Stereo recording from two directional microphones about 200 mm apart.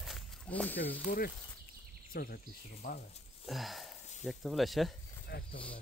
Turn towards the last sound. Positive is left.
turn(degrees=0)  # may be behind; listen again after turning